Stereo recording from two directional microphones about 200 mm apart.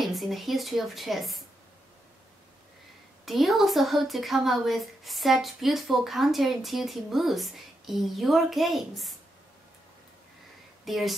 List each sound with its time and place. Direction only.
0.0 s a woman's voice: centre (ahead or behind)
3.3 s a woman's voice: centre (ahead or behind)
10.9 s a woman's voice: centre (ahead or behind)